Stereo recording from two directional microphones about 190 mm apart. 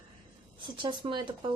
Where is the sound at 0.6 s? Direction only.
25° right (ahead or behind).